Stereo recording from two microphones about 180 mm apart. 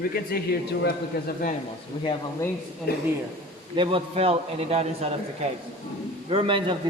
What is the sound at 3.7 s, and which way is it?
A man's voice, 30° right (ahead or behind).